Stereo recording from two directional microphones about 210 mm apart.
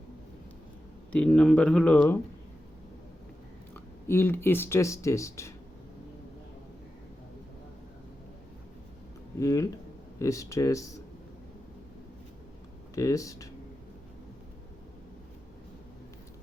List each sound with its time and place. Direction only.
1.1 s speech: 5° left (ahead or behind)
3.8 s speech: 10° left (ahead or behind)
9.4 s speech: 15° left (ahead or behind)
12.9 s speech: 15° left (ahead or behind)